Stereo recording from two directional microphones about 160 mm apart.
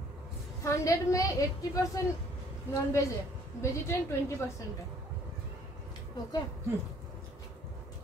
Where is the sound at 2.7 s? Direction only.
20° left (ahead or behind).